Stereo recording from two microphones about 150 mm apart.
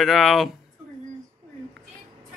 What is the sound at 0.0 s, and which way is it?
Speech, centre (ahead or behind).